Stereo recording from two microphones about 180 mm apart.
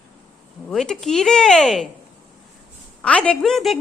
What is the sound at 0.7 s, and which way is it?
A woman's voice, centre (ahead or behind).